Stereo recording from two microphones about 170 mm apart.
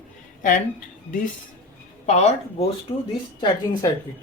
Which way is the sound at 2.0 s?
40° left (ahead or behind).